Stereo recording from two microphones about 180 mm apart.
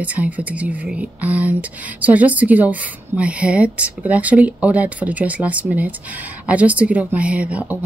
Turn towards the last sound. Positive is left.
turn(degrees=-5)  # may be behind; listen again after turning